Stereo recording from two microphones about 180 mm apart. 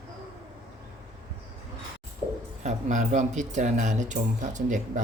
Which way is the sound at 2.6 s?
40° right (ahead or behind).